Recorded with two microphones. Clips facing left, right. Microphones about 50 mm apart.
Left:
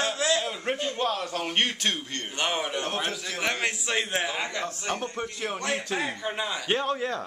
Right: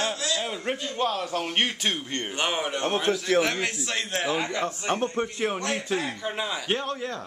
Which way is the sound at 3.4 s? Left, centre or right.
Centre.